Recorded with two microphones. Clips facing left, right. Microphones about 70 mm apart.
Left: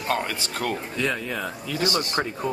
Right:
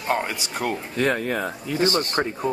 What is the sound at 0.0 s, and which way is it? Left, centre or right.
Speech, centre.